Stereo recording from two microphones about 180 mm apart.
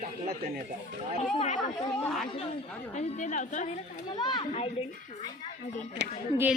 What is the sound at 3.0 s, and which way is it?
Speech, 40° left (ahead or behind).